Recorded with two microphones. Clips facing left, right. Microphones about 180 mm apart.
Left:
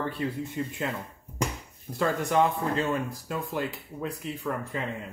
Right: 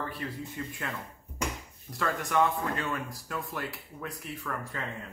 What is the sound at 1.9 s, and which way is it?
Speech, 25° left (ahead or behind).